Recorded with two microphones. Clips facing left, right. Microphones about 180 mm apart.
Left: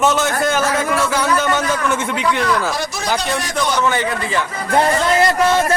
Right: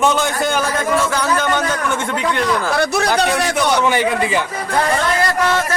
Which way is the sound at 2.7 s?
65° right (ahead or behind).